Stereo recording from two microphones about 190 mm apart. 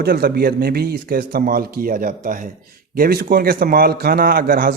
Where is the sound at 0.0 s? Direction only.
55° right (ahead or behind).